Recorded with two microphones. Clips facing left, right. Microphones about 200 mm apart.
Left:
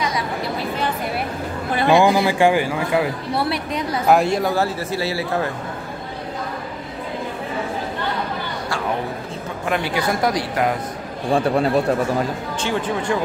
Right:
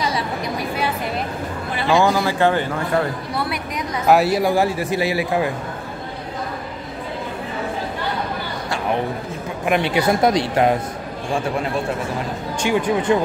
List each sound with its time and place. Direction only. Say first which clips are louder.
0.6 s a sound: right 1 dB; 10° right (ahead or behind)
1.9 s speech: left 2 dB; 15° left (ahead or behind)
3.3 s a woman's voice: left 5 dB; 30° left (ahead or behind)
4.1 s a man's voice: right 2 dB; 5° right (ahead or behind)
9.7 s a woman's voice: right 4 dB; 20° right (ahead or behind)
11.3 s speech: left 5 dB; 35° left (ahead or behind)
12.5 s a man's voice: right 5 dB; 15° right (ahead or behind)